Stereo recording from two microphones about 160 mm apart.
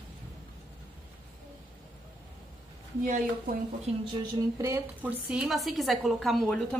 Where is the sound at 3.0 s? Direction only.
60° right (ahead or behind).